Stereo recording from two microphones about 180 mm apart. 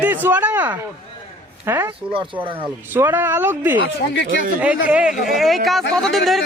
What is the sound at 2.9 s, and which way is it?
Speech, 10° right (ahead or behind).